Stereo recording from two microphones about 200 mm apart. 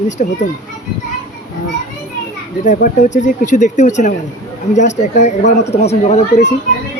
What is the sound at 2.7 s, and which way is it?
Speech, 40° left (ahead or behind).